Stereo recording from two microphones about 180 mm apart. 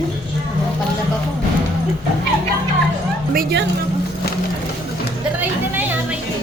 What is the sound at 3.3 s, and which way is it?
Speech, 60° right (ahead or behind).